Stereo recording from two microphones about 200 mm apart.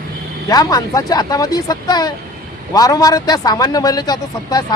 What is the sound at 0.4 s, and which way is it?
A man's voice, 20° left (ahead or behind).